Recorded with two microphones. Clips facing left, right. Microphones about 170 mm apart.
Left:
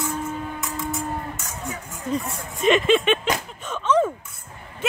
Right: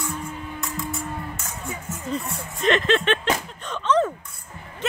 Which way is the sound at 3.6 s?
10° left (ahead or behind).